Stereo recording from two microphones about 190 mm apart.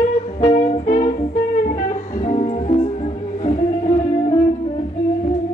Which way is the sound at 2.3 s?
35° left (ahead or behind).